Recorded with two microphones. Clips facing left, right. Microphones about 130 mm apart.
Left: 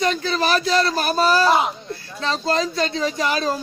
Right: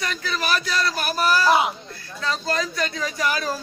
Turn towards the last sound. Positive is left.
turn(degrees=25)  # may be behind; listen again after turning